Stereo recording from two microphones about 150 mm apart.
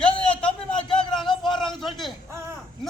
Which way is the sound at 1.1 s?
Centre (ahead or behind).